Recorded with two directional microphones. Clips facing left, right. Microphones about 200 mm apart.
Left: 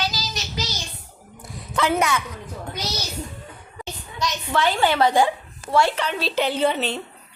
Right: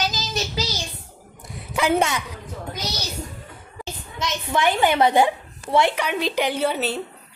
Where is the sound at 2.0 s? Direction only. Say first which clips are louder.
Even; 25° right (ahead or behind).